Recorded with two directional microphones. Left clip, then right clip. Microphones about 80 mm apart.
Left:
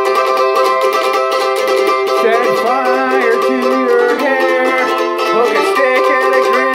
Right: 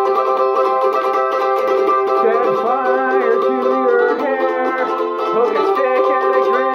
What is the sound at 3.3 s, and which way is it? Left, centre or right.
Music, left.